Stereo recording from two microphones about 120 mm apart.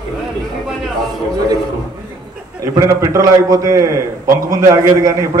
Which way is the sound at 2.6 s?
25° right (ahead or behind).